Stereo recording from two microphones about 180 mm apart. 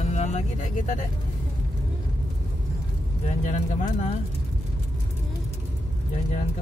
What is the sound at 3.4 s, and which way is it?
Speech, 40° left (ahead or behind).